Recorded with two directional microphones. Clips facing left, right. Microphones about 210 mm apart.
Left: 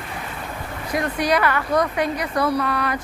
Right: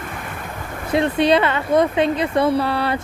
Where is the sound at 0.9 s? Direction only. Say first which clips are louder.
Right 5 dB; 25° right (ahead or behind).